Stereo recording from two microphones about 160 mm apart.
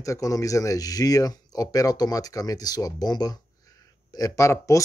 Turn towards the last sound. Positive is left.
turn(degrees=20)  # may be behind; listen again after turning